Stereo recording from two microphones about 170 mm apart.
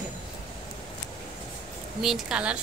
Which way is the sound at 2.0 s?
5° right (ahead or behind).